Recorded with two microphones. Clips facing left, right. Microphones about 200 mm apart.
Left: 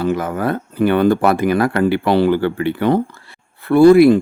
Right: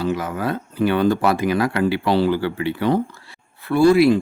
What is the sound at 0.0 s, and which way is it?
Speech, 55° left (ahead or behind).